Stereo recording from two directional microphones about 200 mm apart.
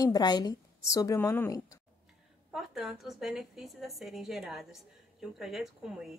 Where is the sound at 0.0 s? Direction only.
20° left (ahead or behind).